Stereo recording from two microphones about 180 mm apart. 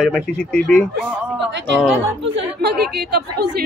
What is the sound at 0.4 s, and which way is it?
Speech, 5° left (ahead or behind).